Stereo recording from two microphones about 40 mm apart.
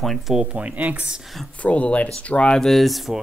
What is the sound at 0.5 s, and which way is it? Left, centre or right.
Speech, right.